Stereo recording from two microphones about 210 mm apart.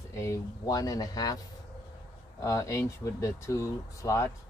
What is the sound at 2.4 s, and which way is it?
Speech, 15° left (ahead or behind).